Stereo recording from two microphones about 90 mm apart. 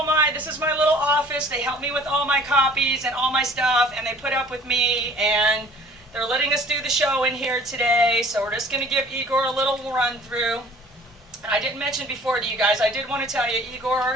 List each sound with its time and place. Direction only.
0.0 s a man's voice: 25° right (ahead or behind); by 13.9 s 10° right (ahead or behind)